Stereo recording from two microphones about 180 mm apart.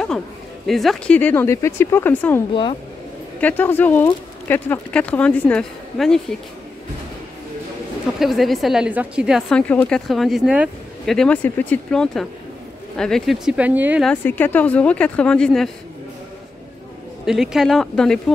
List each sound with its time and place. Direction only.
0.7 s speech: centre (ahead or behind)
8.2 s a woman's voice: centre (ahead or behind)
14.0 s speech: 10° left (ahead or behind)
17.3 s a woman's voice: 5° right (ahead or behind)